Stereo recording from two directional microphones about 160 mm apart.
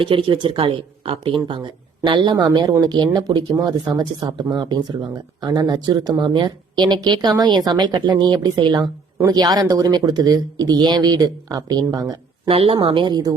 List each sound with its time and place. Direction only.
0.0 s speech: 35° right (ahead or behind)
12.5 s speech: 35° right (ahead or behind)